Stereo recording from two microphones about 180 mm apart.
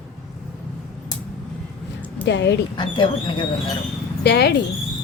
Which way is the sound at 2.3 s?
70° left (ahead or behind).